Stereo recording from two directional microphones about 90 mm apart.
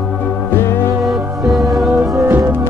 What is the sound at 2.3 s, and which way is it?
Music, 30° right (ahead or behind).